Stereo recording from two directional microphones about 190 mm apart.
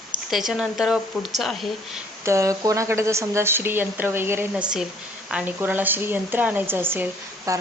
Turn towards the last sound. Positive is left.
turn(degrees=-15)  # may be behind; listen again after turning